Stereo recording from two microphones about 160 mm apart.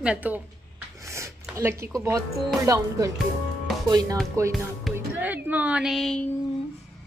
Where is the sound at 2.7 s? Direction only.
20° right (ahead or behind).